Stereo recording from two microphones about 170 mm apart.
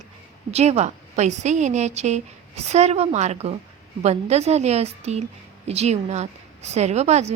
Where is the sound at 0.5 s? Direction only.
40° right (ahead or behind).